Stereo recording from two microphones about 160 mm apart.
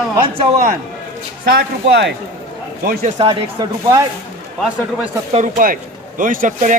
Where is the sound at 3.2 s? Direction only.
35° right (ahead or behind).